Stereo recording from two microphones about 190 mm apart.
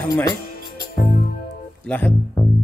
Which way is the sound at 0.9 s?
45° left (ahead or behind).